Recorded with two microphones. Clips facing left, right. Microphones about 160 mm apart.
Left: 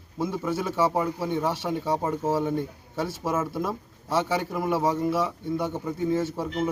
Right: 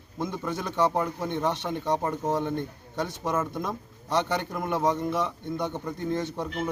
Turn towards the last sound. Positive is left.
turn(degrees=5)  # may be behind; listen again after turning